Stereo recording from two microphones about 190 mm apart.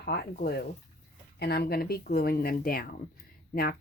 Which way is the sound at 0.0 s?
50° left (ahead or behind).